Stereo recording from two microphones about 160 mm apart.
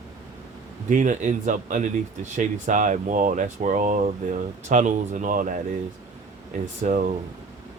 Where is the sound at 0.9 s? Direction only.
50° right (ahead or behind).